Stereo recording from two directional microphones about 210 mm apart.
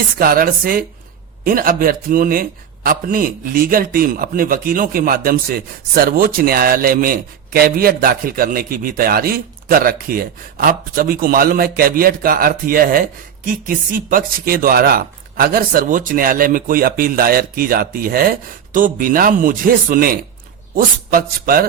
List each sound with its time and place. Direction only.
0.2 s a man's voice: 45° right (ahead or behind)